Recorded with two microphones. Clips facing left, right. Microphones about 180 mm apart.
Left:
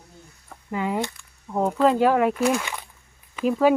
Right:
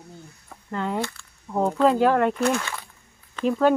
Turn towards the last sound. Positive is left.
turn(degrees=5)  # may be behind; listen again after turning